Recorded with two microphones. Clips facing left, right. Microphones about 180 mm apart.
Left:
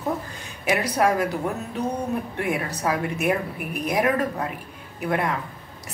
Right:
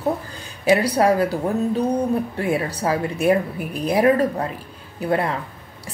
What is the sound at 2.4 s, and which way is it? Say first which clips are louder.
Speech: right 4 dB; 30° right (ahead or behind).